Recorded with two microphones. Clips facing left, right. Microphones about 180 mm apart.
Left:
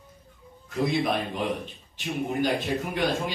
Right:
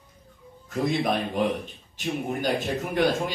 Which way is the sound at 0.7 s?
45° right (ahead or behind).